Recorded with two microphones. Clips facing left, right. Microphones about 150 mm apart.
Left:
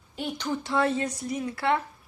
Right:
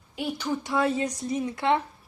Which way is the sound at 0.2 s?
5° right (ahead or behind).